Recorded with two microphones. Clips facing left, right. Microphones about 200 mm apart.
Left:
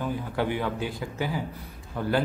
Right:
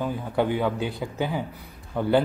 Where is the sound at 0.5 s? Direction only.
20° right (ahead or behind).